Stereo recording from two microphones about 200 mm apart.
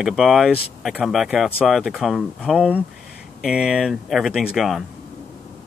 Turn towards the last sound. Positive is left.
turn(degrees=0)  # may be behind; listen again after turning